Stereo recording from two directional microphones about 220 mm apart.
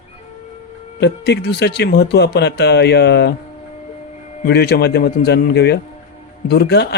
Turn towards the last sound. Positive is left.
turn(degrees=50)  # may be behind; listen again after turning